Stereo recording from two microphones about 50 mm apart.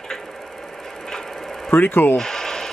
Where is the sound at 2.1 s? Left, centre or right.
Centre.